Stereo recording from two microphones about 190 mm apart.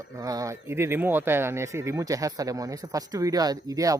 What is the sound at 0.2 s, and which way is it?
Speech, 20° right (ahead or behind).